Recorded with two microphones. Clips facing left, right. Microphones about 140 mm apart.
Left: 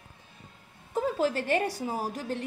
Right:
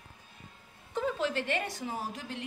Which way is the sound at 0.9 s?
35° left (ahead or behind).